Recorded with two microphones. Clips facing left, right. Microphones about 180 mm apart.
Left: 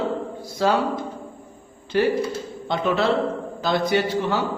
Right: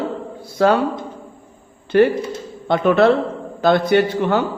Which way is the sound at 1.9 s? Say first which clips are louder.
Right 6 dB; 60° right (ahead or behind).